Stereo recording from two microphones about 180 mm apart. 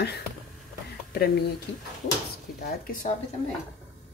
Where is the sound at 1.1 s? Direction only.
65° left (ahead or behind).